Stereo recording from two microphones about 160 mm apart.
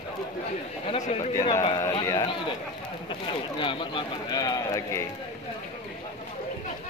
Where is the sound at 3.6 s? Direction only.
30° left (ahead or behind).